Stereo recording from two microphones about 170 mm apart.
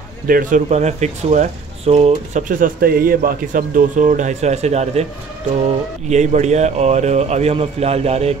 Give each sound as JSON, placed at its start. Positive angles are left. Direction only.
{"t": 0.3, "sound": "speech", "side_deg": -50}
{"t": 6.0, "sound": "speech", "side_deg": -40}